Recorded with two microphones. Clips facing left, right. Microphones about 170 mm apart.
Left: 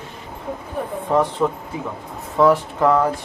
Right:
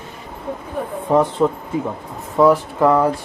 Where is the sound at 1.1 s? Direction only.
15° right (ahead or behind).